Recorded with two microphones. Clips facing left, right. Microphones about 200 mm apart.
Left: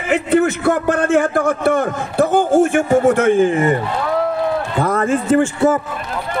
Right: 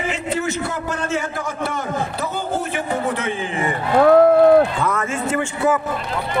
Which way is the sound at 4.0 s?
55° right (ahead or behind).